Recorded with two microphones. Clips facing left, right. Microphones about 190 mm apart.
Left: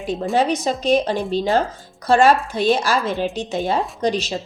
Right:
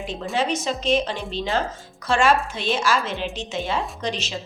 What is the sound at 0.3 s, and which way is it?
A woman's voice, 35° left (ahead or behind).